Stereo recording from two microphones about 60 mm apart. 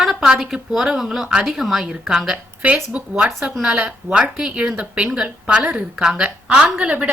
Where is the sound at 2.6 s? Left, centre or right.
Centre.